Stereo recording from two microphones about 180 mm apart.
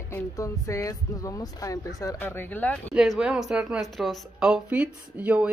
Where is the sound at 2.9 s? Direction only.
5° right (ahead or behind).